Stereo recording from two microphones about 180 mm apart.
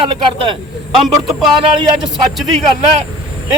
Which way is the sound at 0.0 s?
30° right (ahead or behind).